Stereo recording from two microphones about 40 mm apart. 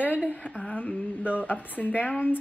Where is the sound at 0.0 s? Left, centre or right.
Left.